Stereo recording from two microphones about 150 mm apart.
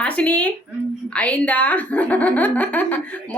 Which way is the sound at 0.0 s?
10° left (ahead or behind).